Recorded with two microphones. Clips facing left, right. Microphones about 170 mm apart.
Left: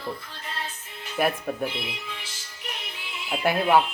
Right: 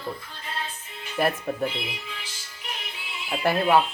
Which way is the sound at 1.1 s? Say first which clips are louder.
Even; centre (ahead or behind).